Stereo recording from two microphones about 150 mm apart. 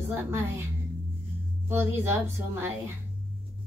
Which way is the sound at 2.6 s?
15° right (ahead or behind).